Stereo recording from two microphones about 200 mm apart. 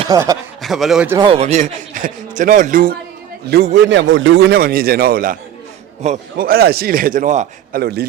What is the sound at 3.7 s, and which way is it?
Speech, 65° right (ahead or behind).